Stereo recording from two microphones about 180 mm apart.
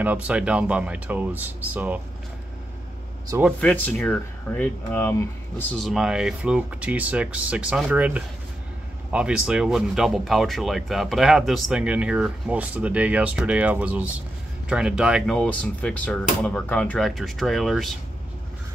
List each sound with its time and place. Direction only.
0.0 s speech: 10° right (ahead or behind)
3.3 s speech: 15° right (ahead or behind)
3.6 s speech: 10° left (ahead or behind)
15.3 s speech: 5° left (ahead or behind)